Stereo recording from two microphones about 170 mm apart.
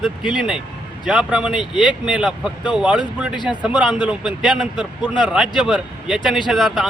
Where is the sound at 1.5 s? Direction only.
30° left (ahead or behind).